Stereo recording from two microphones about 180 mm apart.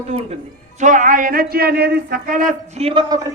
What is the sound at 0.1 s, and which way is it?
A man's voice, 35° right (ahead or behind).